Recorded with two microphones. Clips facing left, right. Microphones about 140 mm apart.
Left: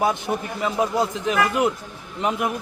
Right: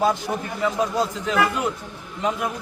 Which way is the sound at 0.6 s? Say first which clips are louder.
Even; 20° left (ahead or behind).